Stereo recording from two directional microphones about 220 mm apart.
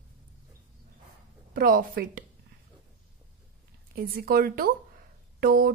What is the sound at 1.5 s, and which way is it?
Speech, 40° right (ahead or behind).